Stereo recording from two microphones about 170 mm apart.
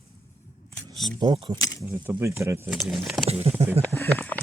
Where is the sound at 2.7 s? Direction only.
Centre (ahead or behind).